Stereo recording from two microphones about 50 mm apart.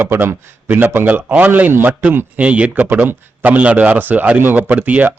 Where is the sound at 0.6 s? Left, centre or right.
Right.